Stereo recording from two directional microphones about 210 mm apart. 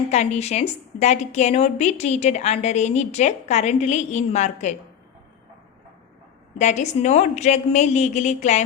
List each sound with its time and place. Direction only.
0.1 s a woman's voice: 30° left (ahead or behind)
6.6 s a woman's voice: 35° left (ahead or behind)